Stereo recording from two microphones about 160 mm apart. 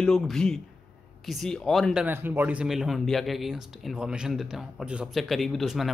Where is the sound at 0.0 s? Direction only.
5° left (ahead or behind).